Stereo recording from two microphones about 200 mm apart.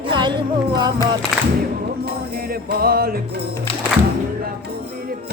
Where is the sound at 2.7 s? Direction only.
50° right (ahead or behind).